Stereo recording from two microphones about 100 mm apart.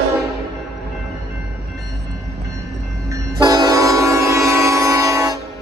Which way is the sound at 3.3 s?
40° right (ahead or behind).